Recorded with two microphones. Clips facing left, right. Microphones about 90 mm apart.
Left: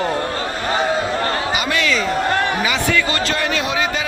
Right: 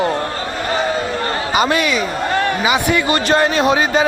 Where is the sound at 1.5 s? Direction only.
35° right (ahead or behind).